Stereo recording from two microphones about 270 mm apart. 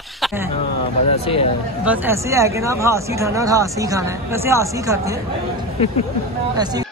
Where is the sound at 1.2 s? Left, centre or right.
Left.